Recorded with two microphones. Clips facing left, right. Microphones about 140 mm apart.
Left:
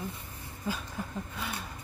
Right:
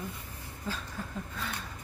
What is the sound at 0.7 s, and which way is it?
Speech, 15° left (ahead or behind).